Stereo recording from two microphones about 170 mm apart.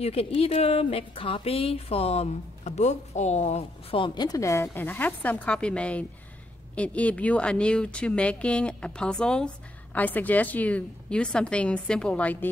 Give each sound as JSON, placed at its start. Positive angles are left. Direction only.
{"t": 0.0, "sound": "a woman's voice", "side_deg": 35}